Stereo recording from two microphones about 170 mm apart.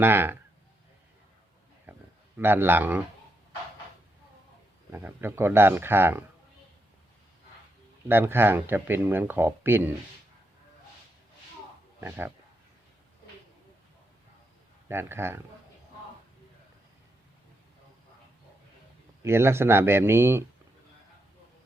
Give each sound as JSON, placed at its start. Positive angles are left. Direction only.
{"t": 0.0, "sound": "speech", "side_deg": -10}
{"t": 1.9, "sound": "a sound", "side_deg": -10}
{"t": 2.4, "sound": "speech", "side_deg": -10}
{"t": 4.9, "sound": "speech", "side_deg": -15}
{"t": 8.0, "sound": "speech", "side_deg": -10}
{"t": 11.9, "sound": "speech", "side_deg": -10}
{"t": 14.8, "sound": "speech", "side_deg": -15}
{"t": 19.2, "sound": "speech", "side_deg": -15}